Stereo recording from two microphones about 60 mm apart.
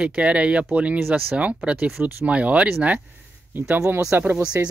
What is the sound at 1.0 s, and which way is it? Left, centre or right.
Speech, right.